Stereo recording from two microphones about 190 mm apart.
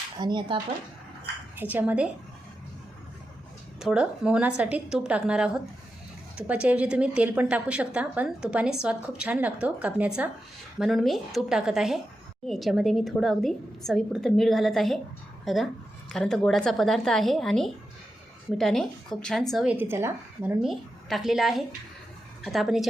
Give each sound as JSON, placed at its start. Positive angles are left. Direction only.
{"t": 0.2, "sound": "speech", "side_deg": -25}
{"t": 1.5, "sound": "a woman's voice", "side_deg": -10}
{"t": 3.8, "sound": "a woman's voice", "side_deg": -5}
{"t": 20.6, "sound": "a woman's voice", "side_deg": 0}